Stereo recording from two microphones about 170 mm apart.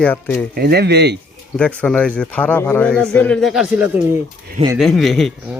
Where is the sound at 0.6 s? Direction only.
70° right (ahead or behind).